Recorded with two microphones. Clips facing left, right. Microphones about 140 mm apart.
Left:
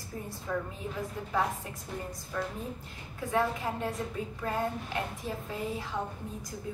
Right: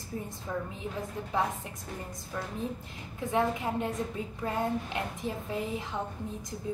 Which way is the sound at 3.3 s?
20° right (ahead or behind).